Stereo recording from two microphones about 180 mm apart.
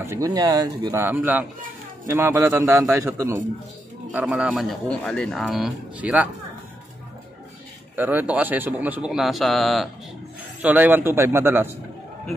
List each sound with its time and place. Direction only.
0.0 s a man's voice: 15° right (ahead or behind)
7.9 s a man's voice: 10° right (ahead or behind)